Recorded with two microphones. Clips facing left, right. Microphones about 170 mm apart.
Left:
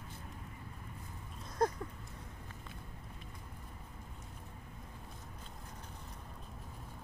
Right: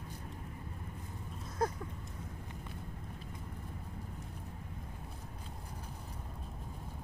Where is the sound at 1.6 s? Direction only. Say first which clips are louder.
Left 2 dB; 5° right (ahead or behind).